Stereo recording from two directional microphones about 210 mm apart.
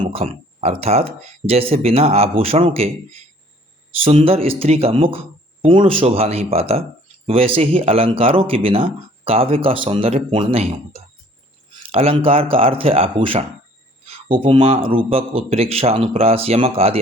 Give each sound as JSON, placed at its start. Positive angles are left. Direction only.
{"t": 0.0, "sound": "speech", "side_deg": -25}
{"t": 14.0, "sound": "a sound", "side_deg": -25}
{"t": 14.9, "sound": "speech", "side_deg": -25}